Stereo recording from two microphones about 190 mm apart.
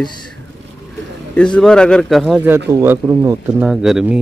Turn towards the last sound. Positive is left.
turn(degrees=-5)  # may be behind; listen again after turning